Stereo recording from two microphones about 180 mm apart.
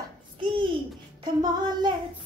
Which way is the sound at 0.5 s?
30° right (ahead or behind).